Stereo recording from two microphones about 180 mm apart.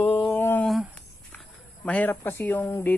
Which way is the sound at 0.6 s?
Centre (ahead or behind).